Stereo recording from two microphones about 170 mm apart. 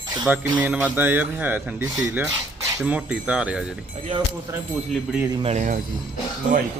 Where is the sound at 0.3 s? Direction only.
10° right (ahead or behind).